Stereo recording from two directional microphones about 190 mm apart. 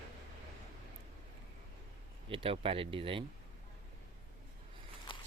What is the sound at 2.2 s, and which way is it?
Speech, 30° right (ahead or behind).